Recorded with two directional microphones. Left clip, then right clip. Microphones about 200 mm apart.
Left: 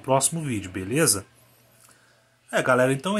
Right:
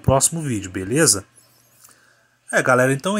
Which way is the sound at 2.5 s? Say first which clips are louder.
Right 4 dB; 15° right (ahead or behind).